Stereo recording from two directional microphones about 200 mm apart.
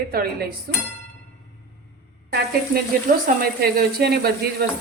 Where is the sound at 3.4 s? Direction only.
50° right (ahead or behind).